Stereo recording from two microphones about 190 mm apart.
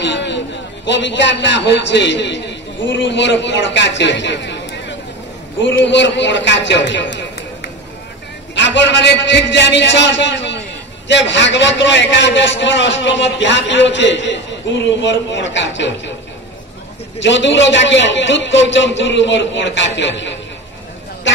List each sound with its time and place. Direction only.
0.0 s a sound: 70° left (ahead or behind)
0.8 s a man's voice: 70° left (ahead or behind)
17.2 s a man's voice: 70° left (ahead or behind)